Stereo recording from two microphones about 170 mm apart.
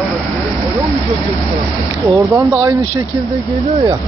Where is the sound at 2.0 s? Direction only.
15° right (ahead or behind).